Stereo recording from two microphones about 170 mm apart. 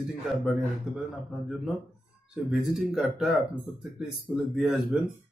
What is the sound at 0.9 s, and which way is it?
Speech, 5° right (ahead or behind).